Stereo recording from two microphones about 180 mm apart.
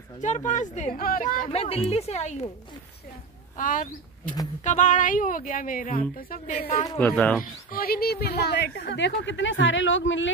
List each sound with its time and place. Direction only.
0.2 s speech: 40° left (ahead or behind)
0.9 s speech: 55° left (ahead or behind)
1.5 s a woman's voice: 35° left (ahead or behind)
3.5 s speech: 50° left (ahead or behind)
7.0 s speech: 10° left (ahead or behind)
7.4 s speech: 55° left (ahead or behind); by 10.3 s 90° left